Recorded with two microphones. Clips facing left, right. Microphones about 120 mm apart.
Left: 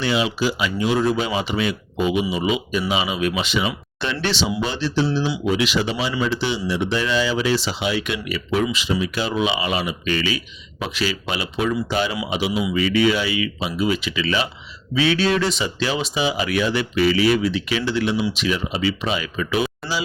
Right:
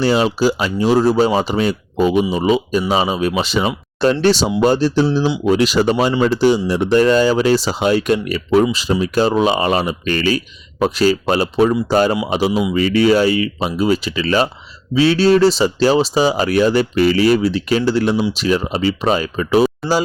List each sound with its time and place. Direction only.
0.0 s speech: 40° right (ahead or behind)